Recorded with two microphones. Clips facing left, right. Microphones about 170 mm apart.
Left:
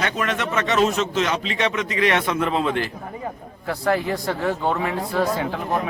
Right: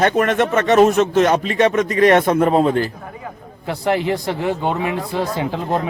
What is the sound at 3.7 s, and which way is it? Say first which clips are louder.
Speech: right 3 dB; 20° right (ahead or behind).